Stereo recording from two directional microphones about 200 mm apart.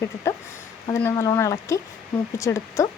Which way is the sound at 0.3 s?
15° left (ahead or behind).